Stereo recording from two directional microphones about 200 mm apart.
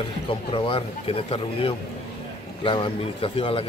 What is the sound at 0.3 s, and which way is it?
Speech, 25° left (ahead or behind).